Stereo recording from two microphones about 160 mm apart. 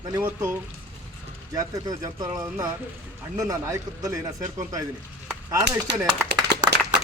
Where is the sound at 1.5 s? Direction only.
20° right (ahead or behind).